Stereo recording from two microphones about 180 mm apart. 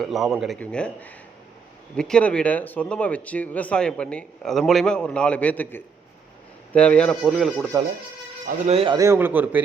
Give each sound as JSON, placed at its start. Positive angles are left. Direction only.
{"t": 0.0, "sound": "a man's voice", "side_deg": 0}
{"t": 8.6, "sound": "speech", "side_deg": -30}
{"t": 9.0, "sound": "a man's voice", "side_deg": -15}